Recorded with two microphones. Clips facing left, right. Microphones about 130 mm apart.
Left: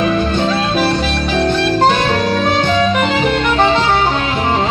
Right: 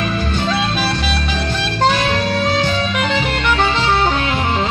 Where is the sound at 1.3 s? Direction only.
45° left (ahead or behind).